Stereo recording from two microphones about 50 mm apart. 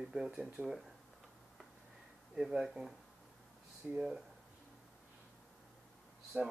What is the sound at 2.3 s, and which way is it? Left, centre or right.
Speech, centre.